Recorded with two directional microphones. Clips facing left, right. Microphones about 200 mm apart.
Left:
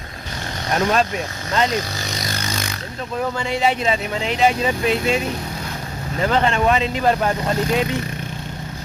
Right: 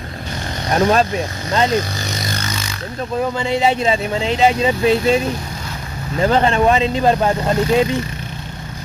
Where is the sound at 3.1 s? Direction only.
25° right (ahead or behind).